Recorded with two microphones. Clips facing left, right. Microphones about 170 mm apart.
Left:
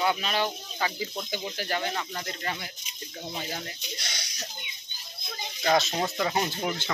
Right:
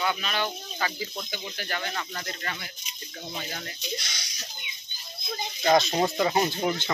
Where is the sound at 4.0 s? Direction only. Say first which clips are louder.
Left 2 dB; 60° left (ahead or behind).